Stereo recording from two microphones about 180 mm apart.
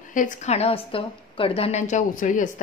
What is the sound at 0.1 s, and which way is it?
A woman's voice, 45° left (ahead or behind).